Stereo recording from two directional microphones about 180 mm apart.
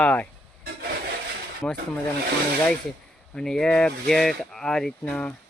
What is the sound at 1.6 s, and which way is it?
Speech, 10° left (ahead or behind).